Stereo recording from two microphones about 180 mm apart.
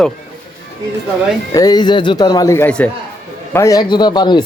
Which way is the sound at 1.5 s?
20° left (ahead or behind).